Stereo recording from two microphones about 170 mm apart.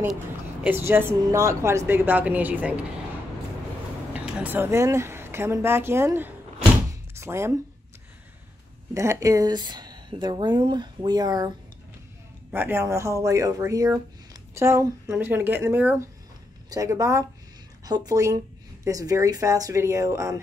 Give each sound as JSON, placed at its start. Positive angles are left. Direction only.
{"t": 0.7, "sound": "a woman's voice", "side_deg": -10}
{"t": 4.1, "sound": "speech", "side_deg": -10}
{"t": 6.9, "sound": "thunk", "side_deg": -15}
{"t": 8.9, "sound": "speech", "side_deg": -15}
{"t": 12.4, "sound": "a woman's voice", "side_deg": -10}